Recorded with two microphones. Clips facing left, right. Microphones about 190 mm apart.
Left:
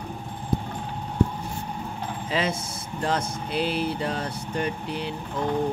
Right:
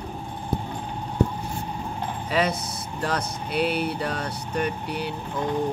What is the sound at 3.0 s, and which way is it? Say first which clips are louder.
Speech: left 1 dB; 25° left (ahead or behind).